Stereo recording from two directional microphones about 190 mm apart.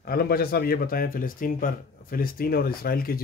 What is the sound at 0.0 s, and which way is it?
Speech, 55° left (ahead or behind).